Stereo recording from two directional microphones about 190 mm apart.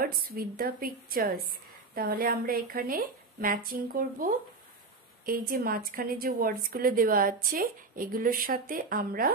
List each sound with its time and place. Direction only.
0.0 s a woman's voice: 50° right (ahead or behind)